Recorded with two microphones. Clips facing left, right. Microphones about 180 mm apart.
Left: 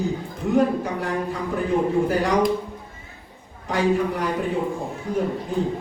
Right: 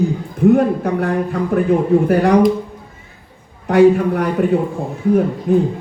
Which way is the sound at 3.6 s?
60° right (ahead or behind).